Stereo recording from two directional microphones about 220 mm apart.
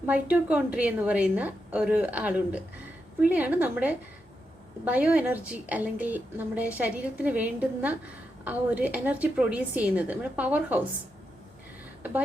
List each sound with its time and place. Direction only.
0.0 s a woman's voice: 5° right (ahead or behind)